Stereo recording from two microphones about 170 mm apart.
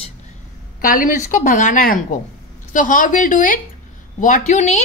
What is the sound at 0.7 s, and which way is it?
A woman's voice, 55° left (ahead or behind).